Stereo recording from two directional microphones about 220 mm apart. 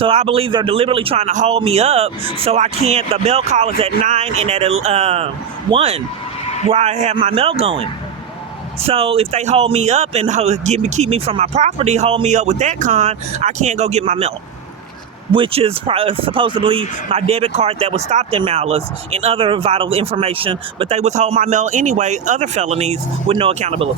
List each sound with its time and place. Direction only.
0.0 s speech: 25° right (ahead or behind)